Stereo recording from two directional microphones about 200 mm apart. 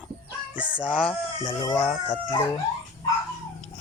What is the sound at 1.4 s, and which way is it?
Speech, 25° left (ahead or behind).